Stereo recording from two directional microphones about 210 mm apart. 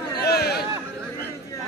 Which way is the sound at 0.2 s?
50° left (ahead or behind).